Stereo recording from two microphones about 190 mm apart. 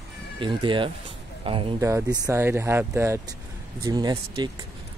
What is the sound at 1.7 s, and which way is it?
Speech, 15° right (ahead or behind).